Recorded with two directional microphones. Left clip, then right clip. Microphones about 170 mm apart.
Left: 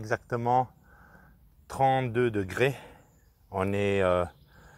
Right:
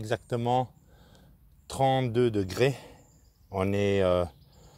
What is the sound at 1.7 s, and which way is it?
Speech, 35° right (ahead or behind).